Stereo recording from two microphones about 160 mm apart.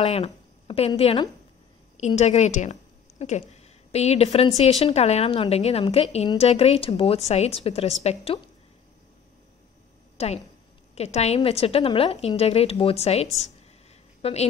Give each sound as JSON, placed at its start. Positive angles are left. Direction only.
{"t": 0.0, "sound": "a woman's voice", "side_deg": 40}
{"t": 10.1, "sound": "a woman's voice", "side_deg": 40}